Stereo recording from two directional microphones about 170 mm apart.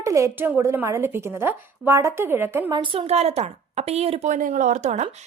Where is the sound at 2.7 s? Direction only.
30° right (ahead or behind).